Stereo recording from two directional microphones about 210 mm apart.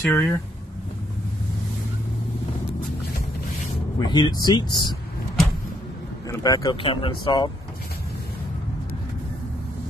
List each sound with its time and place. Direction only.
0.0 s speech: 10° left (ahead or behind)
4.0 s speech: 20° left (ahead or behind)
6.2 s speech: 15° left (ahead or behind)